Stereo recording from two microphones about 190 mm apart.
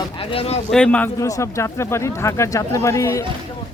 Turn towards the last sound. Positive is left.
turn(degrees=15)  # may be behind; listen again after turning